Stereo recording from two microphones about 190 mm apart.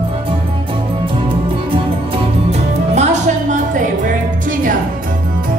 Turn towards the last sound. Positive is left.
turn(degrees=-40)  # may be behind; listen again after turning